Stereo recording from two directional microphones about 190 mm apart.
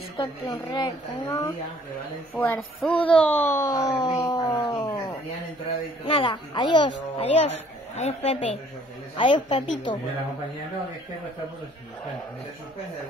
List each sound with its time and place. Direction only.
0.2 s speech: 25° left (ahead or behind)
2.3 s speech: 10° left (ahead or behind)
2.9 s speech: 30° left (ahead or behind)
3.2 s speech: 10° left (ahead or behind)
3.7 s speech: 20° left (ahead or behind)
6.0 s a woman's voice: 25° left (ahead or behind)